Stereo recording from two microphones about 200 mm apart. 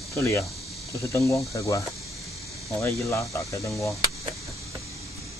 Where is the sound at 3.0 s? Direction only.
15° left (ahead or behind).